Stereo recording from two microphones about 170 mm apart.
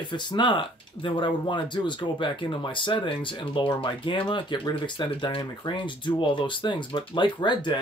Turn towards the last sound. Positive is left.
turn(degrees=30)  # may be behind; listen again after turning